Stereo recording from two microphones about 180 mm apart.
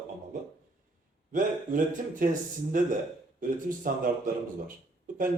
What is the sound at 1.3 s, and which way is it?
A man's voice, 45° right (ahead or behind).